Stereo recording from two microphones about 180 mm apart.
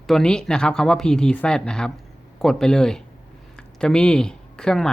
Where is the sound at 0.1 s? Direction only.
5° left (ahead or behind).